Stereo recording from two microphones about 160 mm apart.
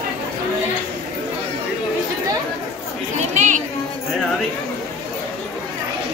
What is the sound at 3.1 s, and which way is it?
Speech, 50° right (ahead or behind).